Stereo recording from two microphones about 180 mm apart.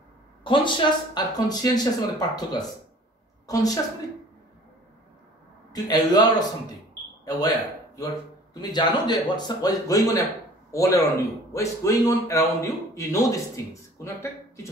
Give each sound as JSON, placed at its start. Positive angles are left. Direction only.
{"t": 0.4, "sound": "speech", "side_deg": 25}
{"t": 5.7, "sound": "a man's voice", "side_deg": 20}